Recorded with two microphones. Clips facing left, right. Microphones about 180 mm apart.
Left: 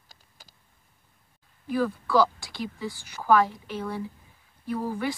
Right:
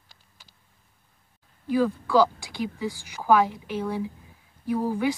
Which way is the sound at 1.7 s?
10° right (ahead or behind).